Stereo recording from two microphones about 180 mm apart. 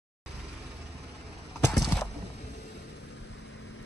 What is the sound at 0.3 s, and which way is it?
Vehicle, 70° right (ahead or behind).